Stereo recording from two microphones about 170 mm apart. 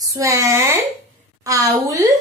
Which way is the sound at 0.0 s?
20° right (ahead or behind).